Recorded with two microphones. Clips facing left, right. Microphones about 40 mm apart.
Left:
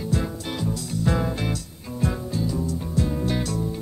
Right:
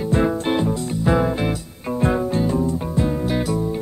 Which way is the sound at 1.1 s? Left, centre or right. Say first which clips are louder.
Right 6 dB; centre.